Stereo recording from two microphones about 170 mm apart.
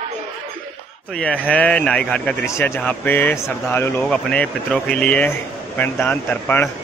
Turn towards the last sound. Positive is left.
turn(degrees=10)  # may be behind; listen again after turning